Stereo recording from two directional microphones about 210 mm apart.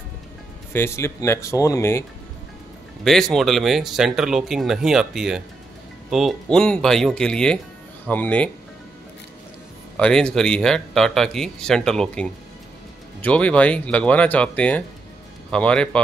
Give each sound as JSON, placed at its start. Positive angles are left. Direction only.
{"t": 0.7, "sound": "speech", "side_deg": 10}
{"t": 3.0, "sound": "speech", "side_deg": 0}
{"t": 9.9, "sound": "speech", "side_deg": 5}